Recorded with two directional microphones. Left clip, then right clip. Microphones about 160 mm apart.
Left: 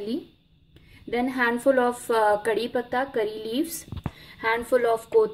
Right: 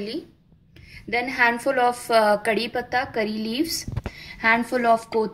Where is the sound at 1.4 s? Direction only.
40° left (ahead or behind).